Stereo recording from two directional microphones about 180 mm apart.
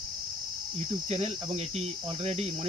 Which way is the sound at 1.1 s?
35° right (ahead or behind).